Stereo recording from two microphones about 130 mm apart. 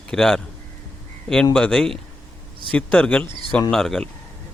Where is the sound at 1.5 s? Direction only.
5° left (ahead or behind).